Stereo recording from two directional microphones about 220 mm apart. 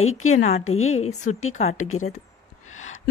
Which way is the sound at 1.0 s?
30° left (ahead or behind).